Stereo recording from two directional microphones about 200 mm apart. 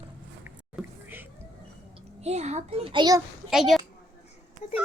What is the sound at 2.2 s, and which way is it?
Speech, 35° right (ahead or behind).